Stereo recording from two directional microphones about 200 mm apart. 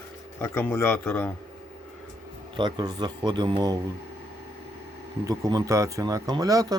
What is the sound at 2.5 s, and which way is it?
Speech, 20° right (ahead or behind).